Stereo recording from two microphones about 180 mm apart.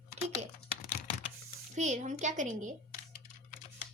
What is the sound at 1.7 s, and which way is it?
A child's voice, 40° right (ahead or behind).